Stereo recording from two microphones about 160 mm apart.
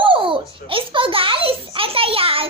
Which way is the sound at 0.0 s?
30° right (ahead or behind).